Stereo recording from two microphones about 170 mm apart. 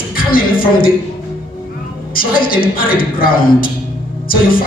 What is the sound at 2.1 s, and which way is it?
Speech, 60° left (ahead or behind).